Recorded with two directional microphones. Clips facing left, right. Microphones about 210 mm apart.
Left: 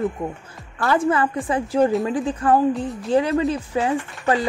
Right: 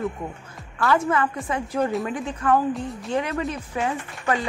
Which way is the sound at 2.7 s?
Centre (ahead or behind).